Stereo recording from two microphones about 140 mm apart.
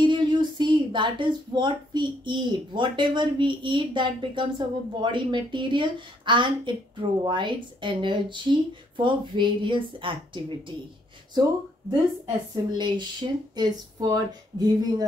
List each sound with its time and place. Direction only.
0.0 s speech: 35° right (ahead or behind)
12.7 s speech: 35° right (ahead or behind)